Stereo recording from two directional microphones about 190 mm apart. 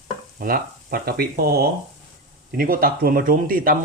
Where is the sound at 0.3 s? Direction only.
50° right (ahead or behind).